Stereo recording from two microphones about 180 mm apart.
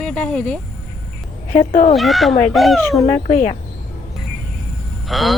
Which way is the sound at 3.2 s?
45° left (ahead or behind).